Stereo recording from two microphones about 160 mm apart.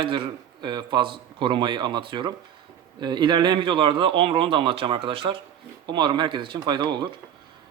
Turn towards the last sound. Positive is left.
turn(degrees=-30)  # may be behind; listen again after turning